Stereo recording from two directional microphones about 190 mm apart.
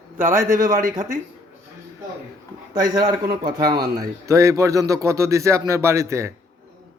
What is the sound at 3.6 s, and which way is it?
Speech, 55° right (ahead or behind).